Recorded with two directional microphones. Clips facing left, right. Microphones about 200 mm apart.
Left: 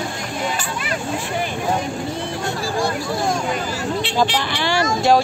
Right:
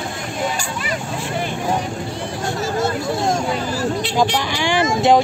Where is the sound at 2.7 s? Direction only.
25° right (ahead or behind).